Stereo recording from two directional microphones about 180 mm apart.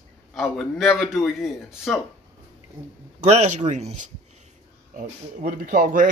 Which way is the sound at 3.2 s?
40° right (ahead or behind).